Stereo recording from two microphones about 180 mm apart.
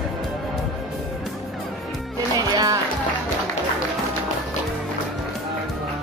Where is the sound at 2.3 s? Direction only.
20° right (ahead or behind).